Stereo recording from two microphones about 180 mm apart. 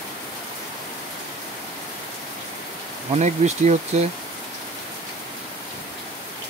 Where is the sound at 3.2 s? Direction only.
40° right (ahead or behind).